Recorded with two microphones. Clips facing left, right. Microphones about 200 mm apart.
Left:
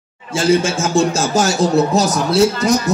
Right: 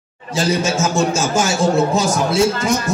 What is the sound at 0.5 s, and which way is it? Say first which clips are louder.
Speech: left 4 dB; 30° left (ahead or behind).